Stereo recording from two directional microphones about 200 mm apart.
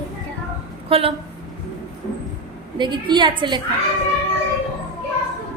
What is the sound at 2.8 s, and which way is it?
Speech, 25° right (ahead or behind).